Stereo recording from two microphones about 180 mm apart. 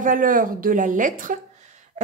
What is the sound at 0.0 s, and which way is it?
A woman's voice, 50° right (ahead or behind).